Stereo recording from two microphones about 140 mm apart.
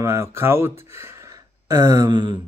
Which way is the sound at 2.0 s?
35° right (ahead or behind).